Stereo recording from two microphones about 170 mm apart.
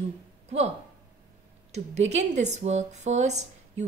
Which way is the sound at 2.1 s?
40° right (ahead or behind).